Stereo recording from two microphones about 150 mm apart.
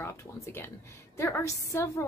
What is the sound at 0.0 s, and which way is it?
A woman's voice, 15° left (ahead or behind).